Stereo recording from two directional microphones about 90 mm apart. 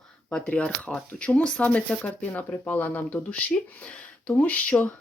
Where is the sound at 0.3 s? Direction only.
10° left (ahead or behind).